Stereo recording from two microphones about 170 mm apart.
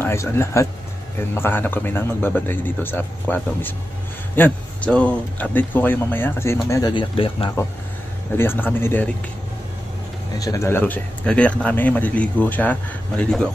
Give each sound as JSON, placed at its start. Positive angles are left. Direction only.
{"t": 0.0, "sound": "speech", "side_deg": 15}
{"t": 8.4, "sound": "speech", "side_deg": 10}
{"t": 10.4, "sound": "speech", "side_deg": 20}